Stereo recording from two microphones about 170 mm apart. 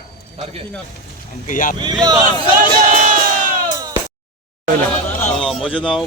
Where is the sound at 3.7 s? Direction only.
20° right (ahead or behind).